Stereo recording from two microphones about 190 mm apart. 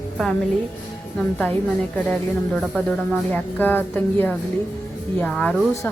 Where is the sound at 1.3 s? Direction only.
5° left (ahead or behind).